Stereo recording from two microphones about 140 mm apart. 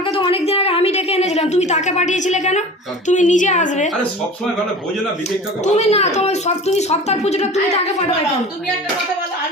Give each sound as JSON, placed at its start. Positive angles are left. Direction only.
{"t": 0.0, "sound": "a sound", "side_deg": 40}
{"t": 3.1, "sound": "a woman's voice", "side_deg": 60}
{"t": 5.6, "sound": "a woman's voice", "side_deg": 50}